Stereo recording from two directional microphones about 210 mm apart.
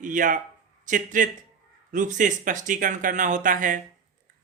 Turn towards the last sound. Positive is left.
turn(degrees=-40)  # may be behind; listen again after turning